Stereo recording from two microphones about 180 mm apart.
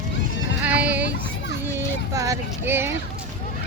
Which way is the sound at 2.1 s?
20° right (ahead or behind).